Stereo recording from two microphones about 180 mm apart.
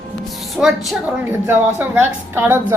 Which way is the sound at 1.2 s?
10° right (ahead or behind).